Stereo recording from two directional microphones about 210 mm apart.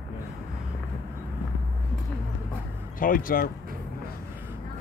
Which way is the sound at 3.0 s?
40° left (ahead or behind).